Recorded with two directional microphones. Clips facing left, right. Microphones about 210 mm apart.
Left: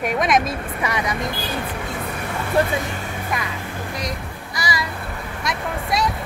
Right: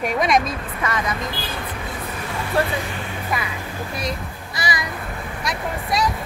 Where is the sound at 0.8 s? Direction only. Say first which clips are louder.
Left 1 dB; 15° left (ahead or behind).